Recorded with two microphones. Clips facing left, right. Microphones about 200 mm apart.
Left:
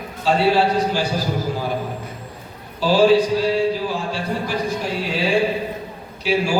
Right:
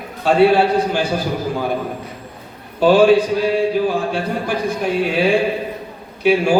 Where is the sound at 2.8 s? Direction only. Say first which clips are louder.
Right 3 dB; 55° right (ahead or behind).